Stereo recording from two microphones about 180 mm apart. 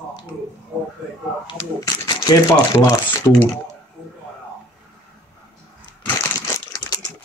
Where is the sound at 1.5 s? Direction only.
25° left (ahead or behind).